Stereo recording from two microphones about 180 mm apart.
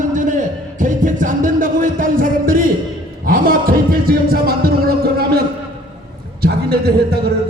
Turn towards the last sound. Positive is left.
turn(degrees=-60)  # may be behind; listen again after turning